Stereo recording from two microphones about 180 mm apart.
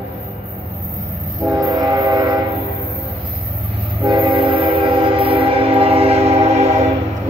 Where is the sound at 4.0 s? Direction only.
25° right (ahead or behind).